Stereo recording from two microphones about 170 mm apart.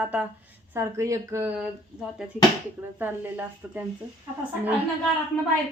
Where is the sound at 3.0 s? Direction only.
10° right (ahead or behind).